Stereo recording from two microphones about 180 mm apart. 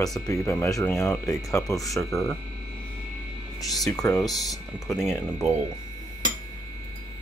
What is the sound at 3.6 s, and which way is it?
Speech, centre (ahead or behind).